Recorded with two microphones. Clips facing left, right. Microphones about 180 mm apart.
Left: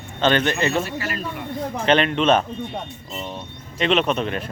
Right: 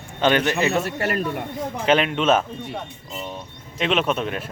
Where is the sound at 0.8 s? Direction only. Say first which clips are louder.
Right 4 dB; 65° right (ahead or behind).